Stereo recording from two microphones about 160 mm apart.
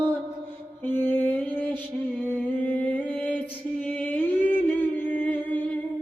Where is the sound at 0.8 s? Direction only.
10° left (ahead or behind).